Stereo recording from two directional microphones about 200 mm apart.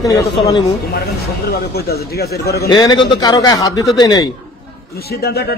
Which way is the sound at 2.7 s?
20° left (ahead or behind).